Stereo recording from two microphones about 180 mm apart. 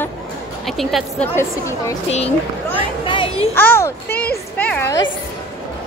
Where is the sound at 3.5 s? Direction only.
10° left (ahead or behind).